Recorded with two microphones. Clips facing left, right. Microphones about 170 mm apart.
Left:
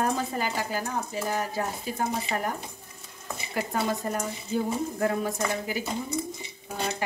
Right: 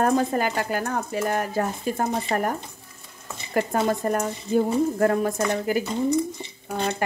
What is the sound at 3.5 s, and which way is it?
Speech, 50° right (ahead or behind).